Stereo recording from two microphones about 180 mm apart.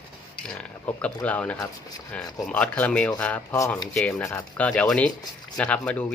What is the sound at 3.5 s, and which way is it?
Speech, 20° left (ahead or behind).